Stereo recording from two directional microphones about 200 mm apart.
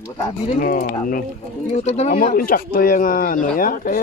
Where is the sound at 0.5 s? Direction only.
40° left (ahead or behind).